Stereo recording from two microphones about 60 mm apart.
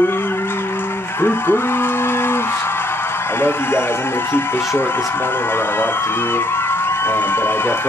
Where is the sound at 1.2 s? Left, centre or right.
Left.